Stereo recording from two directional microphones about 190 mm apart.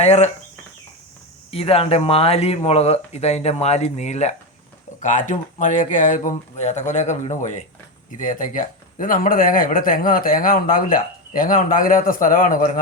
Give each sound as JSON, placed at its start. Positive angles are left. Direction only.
{"t": 0.0, "sound": "speech", "side_deg": 35}
{"t": 1.5, "sound": "speech", "side_deg": 30}